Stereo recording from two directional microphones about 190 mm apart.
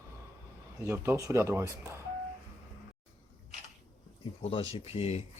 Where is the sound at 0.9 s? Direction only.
15° right (ahead or behind).